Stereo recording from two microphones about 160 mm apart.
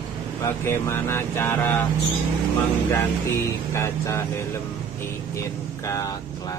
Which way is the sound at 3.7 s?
15° left (ahead or behind).